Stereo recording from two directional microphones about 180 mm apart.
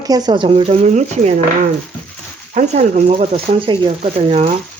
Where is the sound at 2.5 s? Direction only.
40° right (ahead or behind).